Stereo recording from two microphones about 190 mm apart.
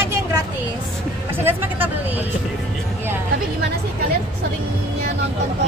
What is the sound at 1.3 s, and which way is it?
Speech, 10° right (ahead or behind).